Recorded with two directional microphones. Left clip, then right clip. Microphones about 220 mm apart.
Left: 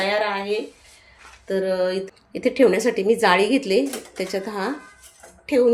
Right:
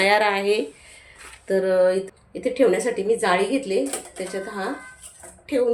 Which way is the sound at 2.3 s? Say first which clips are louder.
Left 2 dB; 30° left (ahead or behind).